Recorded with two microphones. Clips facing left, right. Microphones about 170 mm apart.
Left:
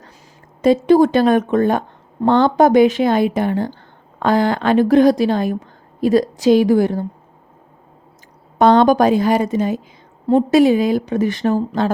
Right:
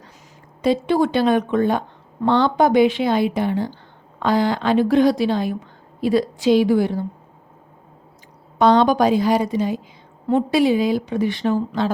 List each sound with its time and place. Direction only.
0.6 s a woman's voice: 45° left (ahead or behind)
8.5 s a woman's voice: 50° left (ahead or behind)